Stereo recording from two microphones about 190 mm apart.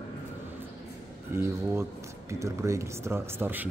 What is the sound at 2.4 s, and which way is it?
Speech, 15° right (ahead or behind).